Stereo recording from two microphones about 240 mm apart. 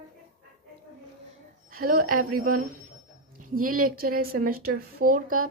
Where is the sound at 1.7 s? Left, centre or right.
Right.